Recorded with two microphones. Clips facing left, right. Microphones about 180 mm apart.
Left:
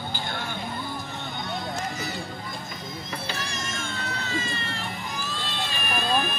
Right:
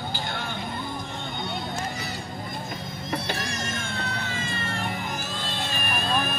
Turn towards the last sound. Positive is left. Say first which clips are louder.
# right 3 dB
turn(degrees=-50)  # may be behind; listen again after turning